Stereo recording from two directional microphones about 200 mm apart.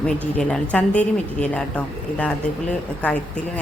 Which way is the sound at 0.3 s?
5° left (ahead or behind).